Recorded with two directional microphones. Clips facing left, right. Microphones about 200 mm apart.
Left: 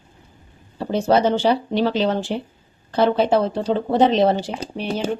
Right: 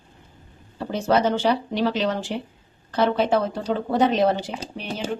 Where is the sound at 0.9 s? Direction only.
30° left (ahead or behind).